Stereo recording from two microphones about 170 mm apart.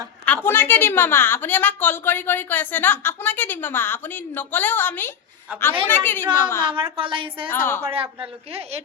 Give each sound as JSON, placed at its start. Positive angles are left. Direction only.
{"t": 0.4, "sound": "a woman's voice", "side_deg": 10}
{"t": 6.7, "sound": "speech", "side_deg": -30}
{"t": 7.5, "sound": "a woman's voice", "side_deg": 10}
{"t": 7.9, "sound": "speech", "side_deg": -35}